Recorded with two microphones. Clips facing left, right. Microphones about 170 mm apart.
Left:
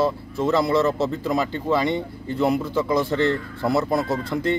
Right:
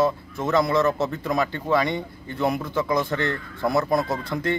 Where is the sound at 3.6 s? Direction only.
5° left (ahead or behind).